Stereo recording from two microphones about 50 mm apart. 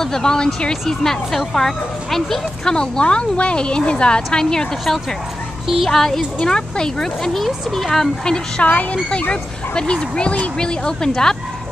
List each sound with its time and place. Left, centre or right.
0.0 s speech: centre
2.7 s speech: centre
8.6 s speech: left
9.3 s speech: centre